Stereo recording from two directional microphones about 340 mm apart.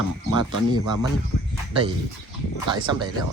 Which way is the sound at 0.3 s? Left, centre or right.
Left.